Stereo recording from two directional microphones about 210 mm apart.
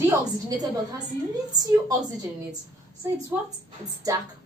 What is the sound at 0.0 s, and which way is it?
A woman's voice, 15° right (ahead or behind).